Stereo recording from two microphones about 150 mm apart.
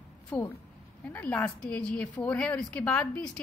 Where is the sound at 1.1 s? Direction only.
10° left (ahead or behind).